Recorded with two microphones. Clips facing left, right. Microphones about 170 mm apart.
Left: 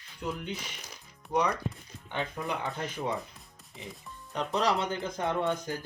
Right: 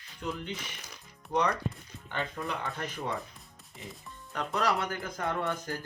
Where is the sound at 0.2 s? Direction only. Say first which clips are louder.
Left 1 dB; 10° left (ahead or behind).